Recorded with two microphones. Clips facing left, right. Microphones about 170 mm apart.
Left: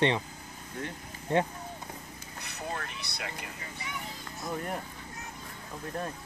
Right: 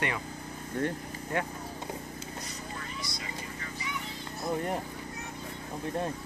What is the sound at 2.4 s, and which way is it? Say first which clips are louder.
Vehicle: left 3 dB; 65° left (ahead or behind).